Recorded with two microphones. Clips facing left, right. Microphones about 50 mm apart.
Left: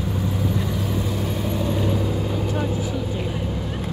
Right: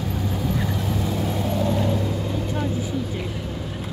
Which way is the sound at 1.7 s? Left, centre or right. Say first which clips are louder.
Even; centre.